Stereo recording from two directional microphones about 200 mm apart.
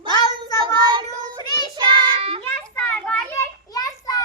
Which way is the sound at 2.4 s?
10° left (ahead or behind).